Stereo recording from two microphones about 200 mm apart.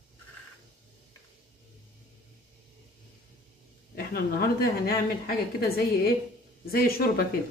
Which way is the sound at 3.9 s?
50° left (ahead or behind).